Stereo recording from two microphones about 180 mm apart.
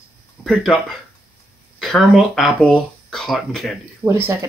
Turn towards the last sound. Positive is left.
turn(degrees=-15)  # may be behind; listen again after turning